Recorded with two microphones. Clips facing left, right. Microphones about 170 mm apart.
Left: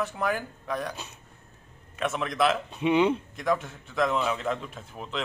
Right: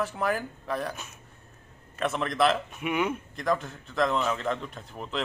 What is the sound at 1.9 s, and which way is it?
Speech, centre (ahead or behind).